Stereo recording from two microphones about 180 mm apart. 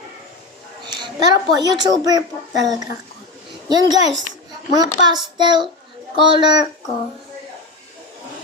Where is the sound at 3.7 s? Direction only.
20° right (ahead or behind).